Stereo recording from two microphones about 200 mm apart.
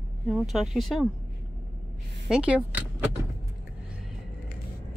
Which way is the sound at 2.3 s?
5° right (ahead or behind).